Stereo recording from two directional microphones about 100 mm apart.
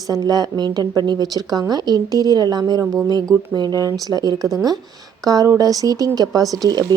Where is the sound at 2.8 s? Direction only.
5° right (ahead or behind).